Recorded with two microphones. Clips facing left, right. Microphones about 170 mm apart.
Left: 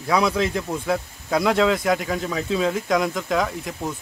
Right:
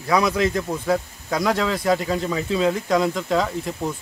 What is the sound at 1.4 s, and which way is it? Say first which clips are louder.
Speech: left 3 dB; 20° left (ahead or behind).